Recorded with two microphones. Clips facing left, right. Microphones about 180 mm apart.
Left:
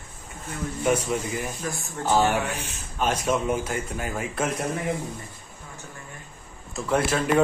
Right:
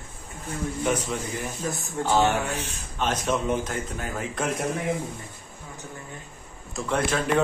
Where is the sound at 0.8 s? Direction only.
10° left (ahead or behind).